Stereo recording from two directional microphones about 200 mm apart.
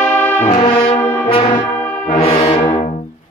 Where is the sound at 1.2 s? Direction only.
25° left (ahead or behind).